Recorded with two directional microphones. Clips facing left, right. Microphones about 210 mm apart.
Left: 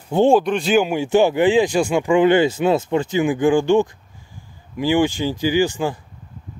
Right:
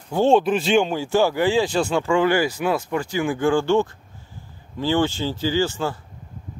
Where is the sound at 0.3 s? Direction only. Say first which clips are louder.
Right 2 dB; centre (ahead or behind).